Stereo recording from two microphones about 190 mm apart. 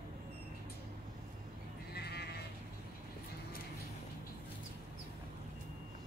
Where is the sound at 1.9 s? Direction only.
60° left (ahead or behind).